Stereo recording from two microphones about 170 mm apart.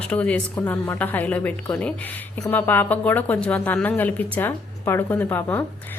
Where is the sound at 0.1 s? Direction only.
10° left (ahead or behind).